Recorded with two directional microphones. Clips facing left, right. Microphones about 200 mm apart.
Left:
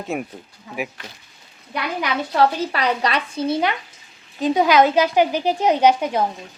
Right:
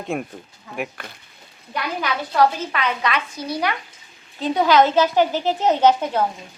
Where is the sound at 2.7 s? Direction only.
35° left (ahead or behind).